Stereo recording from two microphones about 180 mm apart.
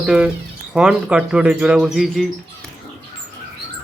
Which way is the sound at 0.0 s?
5° right (ahead or behind).